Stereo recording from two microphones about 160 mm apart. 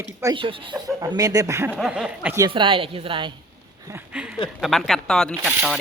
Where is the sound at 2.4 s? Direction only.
30° right (ahead or behind).